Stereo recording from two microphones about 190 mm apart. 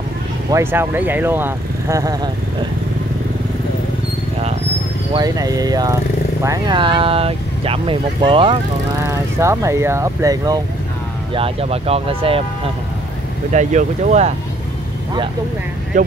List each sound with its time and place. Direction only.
0.5 s speech: 15° right (ahead or behind)
5.1 s speech: 20° right (ahead or behind)
9.0 s speech: 15° right (ahead or behind)
11.3 s speech: 30° right (ahead or behind)
13.5 s speech: 40° right (ahead or behind)